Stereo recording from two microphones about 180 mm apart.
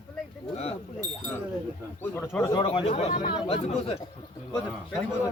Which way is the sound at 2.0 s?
10° left (ahead or behind).